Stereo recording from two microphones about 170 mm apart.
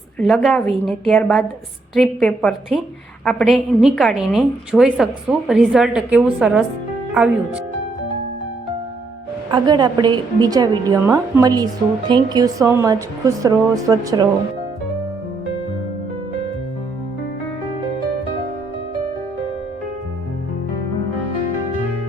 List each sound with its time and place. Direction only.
0.2 s a woman's voice: centre (ahead or behind)
9.5 s a woman's voice: 25° right (ahead or behind)